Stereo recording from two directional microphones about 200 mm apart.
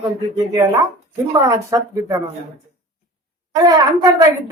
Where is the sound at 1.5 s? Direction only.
15° right (ahead or behind).